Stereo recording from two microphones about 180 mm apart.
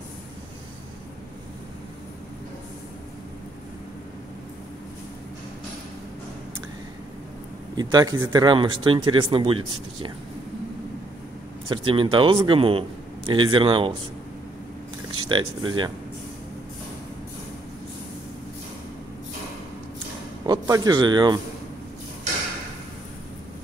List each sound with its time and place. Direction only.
7.7 s speech: 20° right (ahead or behind)
11.7 s speech: 30° right (ahead or behind)
15.2 s speech: 25° right (ahead or behind)
20.4 s a man's voice: 20° right (ahead or behind)